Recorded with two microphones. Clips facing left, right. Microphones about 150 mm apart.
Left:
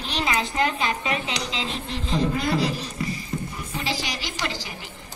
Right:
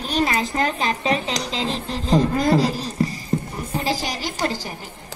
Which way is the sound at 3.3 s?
30° right (ahead or behind).